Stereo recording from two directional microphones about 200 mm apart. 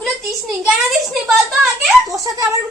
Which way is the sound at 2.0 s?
15° right (ahead or behind).